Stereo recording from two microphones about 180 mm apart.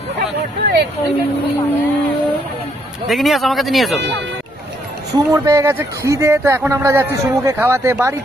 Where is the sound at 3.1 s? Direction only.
Centre (ahead or behind).